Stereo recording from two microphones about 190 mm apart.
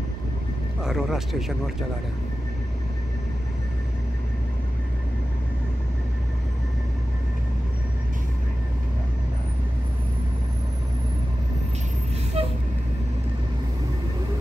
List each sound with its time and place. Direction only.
0.8 s speech: centre (ahead or behind)
12.4 s vehicle: 30° right (ahead or behind)